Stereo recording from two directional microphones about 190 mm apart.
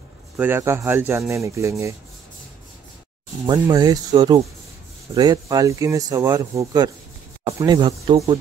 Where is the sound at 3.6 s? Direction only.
20° right (ahead or behind).